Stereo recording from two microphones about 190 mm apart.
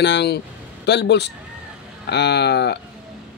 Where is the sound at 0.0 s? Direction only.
65° left (ahead or behind).